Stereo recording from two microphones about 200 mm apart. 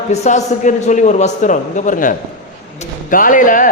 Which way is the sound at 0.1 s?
35° left (ahead or behind).